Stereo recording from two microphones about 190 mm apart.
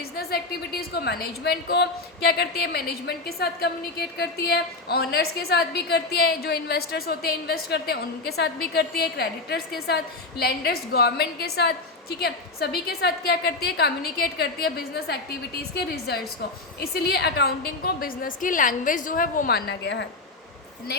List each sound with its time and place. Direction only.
0.2 s a woman's voice: 55° left (ahead or behind)